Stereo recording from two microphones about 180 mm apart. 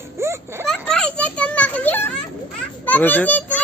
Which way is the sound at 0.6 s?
5° left (ahead or behind).